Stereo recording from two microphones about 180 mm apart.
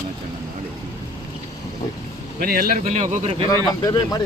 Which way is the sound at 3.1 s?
35° right (ahead or behind).